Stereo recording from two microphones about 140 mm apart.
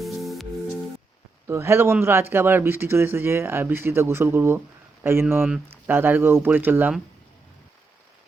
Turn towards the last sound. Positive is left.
turn(degrees=-15)  # may be behind; listen again after turning